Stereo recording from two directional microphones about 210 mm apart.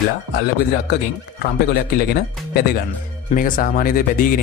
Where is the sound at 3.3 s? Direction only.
40° left (ahead or behind).